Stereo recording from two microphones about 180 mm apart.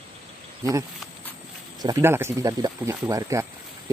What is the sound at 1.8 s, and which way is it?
Speech, 15° right (ahead or behind).